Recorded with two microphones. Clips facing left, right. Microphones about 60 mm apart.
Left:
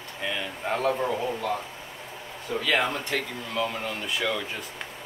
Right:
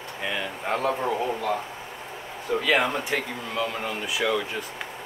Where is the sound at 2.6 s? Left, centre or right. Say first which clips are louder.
Right 2 dB; centre.